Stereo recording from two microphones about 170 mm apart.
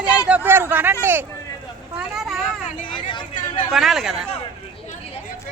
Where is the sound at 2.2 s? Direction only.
Centre (ahead or behind).